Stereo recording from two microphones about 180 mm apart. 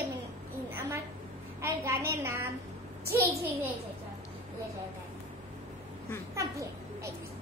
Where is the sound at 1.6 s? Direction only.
15° right (ahead or behind).